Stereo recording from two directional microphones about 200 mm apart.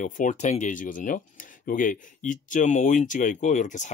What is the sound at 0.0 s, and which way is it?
Speech, 40° left (ahead or behind).